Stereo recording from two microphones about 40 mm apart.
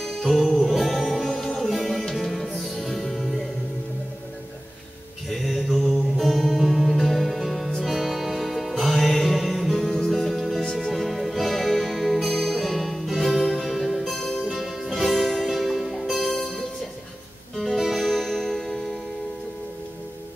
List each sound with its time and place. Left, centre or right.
0.0 s music: centre
5.3 s music: centre
10.6 s music: centre
10.9 s music: centre
14.1 s music: centre
14.5 s music: centre
17.6 s music: centre